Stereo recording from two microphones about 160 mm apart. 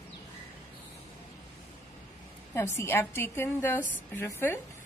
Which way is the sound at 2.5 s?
15° left (ahead or behind).